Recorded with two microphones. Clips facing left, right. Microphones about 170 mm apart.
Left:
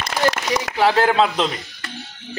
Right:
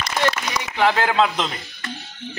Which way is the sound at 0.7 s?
80° left.